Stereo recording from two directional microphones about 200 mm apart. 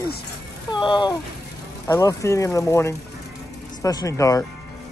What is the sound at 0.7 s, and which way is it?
Speech, 20° left (ahead or behind).